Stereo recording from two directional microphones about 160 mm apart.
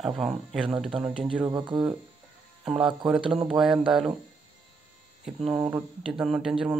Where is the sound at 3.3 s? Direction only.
Centre (ahead or behind).